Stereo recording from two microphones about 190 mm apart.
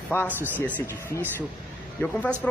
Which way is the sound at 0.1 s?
10° left (ahead or behind).